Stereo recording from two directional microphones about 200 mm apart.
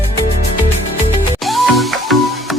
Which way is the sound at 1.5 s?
Centre (ahead or behind).